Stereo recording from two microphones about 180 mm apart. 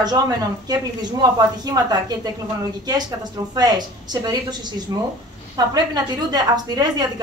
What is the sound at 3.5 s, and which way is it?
A woman's voice, 20° right (ahead or behind).